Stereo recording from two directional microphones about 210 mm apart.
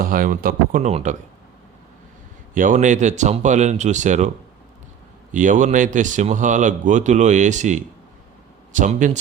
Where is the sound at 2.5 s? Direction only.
35° right (ahead or behind).